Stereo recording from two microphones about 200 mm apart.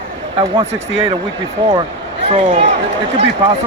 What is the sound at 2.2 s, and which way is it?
Speech, 30° right (ahead or behind).